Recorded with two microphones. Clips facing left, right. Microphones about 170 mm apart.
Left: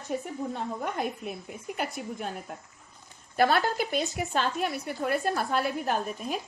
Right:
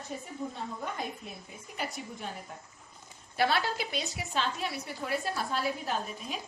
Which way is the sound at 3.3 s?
50° left (ahead or behind).